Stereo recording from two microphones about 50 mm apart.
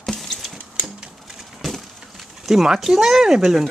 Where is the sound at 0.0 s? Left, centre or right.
Centre.